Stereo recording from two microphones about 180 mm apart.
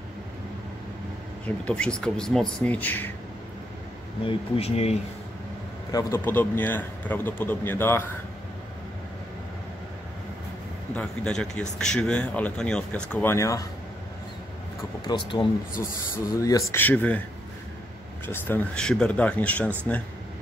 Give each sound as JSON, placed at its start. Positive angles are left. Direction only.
{"t": 1.4, "sound": "speech", "side_deg": 5}
{"t": 4.2, "sound": "speech", "side_deg": 30}
{"t": 5.9, "sound": "speech", "side_deg": 20}
{"t": 11.0, "sound": "speech", "side_deg": 5}
{"t": 15.0, "sound": "speech", "side_deg": 25}
{"t": 16.7, "sound": "speech", "side_deg": 10}
{"t": 18.2, "sound": "speech", "side_deg": 10}